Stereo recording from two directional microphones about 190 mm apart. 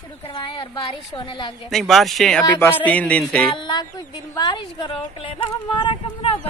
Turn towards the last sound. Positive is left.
turn(degrees=25)  # may be behind; listen again after turning